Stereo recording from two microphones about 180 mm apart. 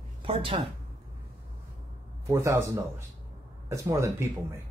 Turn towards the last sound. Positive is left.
turn(degrees=-15)  # may be behind; listen again after turning